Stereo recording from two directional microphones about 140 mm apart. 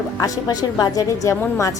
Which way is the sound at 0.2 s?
30° left (ahead or behind).